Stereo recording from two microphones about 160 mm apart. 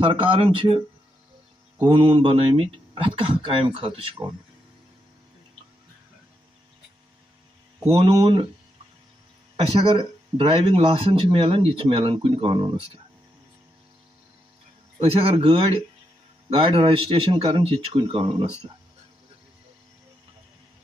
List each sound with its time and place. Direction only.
0.0 s speech: 30° right (ahead or behind)
1.8 s speech: 30° right (ahead or behind)
8.1 s speech: 30° right (ahead or behind)
9.6 s speech: 35° right (ahead or behind)
15.0 s speech: 40° right (ahead or behind)